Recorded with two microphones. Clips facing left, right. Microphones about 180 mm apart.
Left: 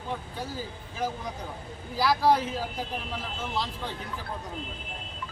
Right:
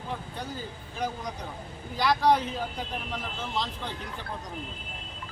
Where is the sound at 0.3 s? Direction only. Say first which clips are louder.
Left 1 dB; centre (ahead or behind).